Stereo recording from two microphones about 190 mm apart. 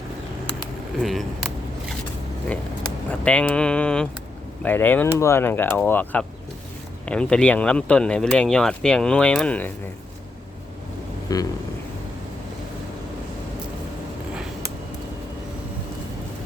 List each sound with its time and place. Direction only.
1.0 s speech: centre (ahead or behind)
3.1 s speech: 5° left (ahead or behind)
11.3 s vehicle: 20° left (ahead or behind)